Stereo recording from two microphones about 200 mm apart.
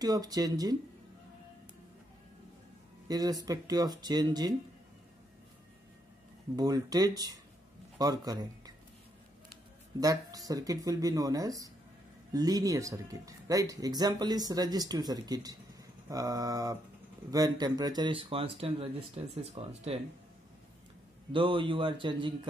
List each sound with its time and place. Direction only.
0.0 s speech: 20° right (ahead or behind)
3.1 s speech: 20° right (ahead or behind)
6.5 s speech: 20° right (ahead or behind)
9.9 s speech: 20° right (ahead or behind)
21.3 s speech: 25° right (ahead or behind)